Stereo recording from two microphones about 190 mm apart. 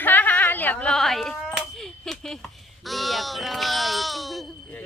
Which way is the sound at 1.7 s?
5° left (ahead or behind).